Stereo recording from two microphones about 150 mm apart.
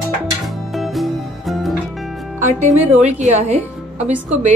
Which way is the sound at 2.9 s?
50° right (ahead or behind).